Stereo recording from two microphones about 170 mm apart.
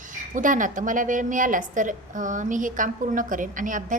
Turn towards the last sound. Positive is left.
turn(degrees=-50)  # may be behind; listen again after turning